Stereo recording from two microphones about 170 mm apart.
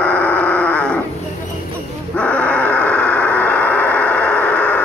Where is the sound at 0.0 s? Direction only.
10° left (ahead or behind).